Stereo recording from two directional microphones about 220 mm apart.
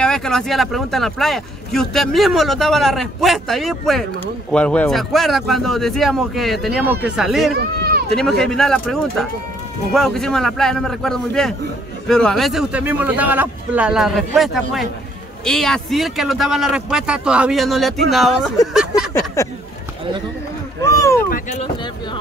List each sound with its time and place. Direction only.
0.0 s speech: 5° left (ahead or behind)
7.5 s run: 45° right (ahead or behind)
8.2 s speech: centre (ahead or behind)
19.4 s speech: 15° left (ahead or behind)
20.8 s speech: 15° left (ahead or behind)
21.3 s speech: 30° left (ahead or behind)